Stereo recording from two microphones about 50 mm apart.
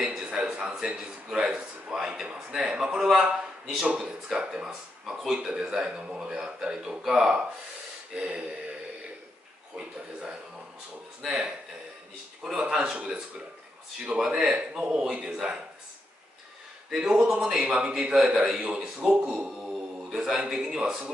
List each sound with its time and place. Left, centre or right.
0.0 s a sound: centre
0.5 s a man's voice: right
11.2 s speech: centre
12.6 s speech: centre
14.3 s speech: centre
14.9 s speech: right
16.9 s a man's voice: centre
18.6 s speech: centre